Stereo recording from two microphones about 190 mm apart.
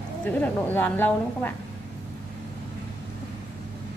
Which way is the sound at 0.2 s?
10° left (ahead or behind).